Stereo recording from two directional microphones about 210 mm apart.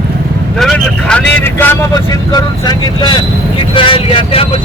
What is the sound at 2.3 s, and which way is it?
Speech, 20° left (ahead or behind).